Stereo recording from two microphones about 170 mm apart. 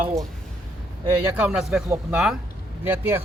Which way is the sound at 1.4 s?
5° right (ahead or behind).